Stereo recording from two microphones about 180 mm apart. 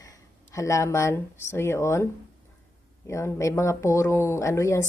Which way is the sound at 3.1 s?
15° left (ahead or behind).